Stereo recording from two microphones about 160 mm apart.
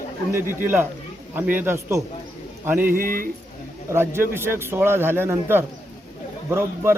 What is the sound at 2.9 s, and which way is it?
Speech, 60° right (ahead or behind).